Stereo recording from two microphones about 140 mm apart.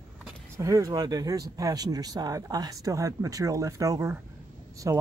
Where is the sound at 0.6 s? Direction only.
25° right (ahead or behind).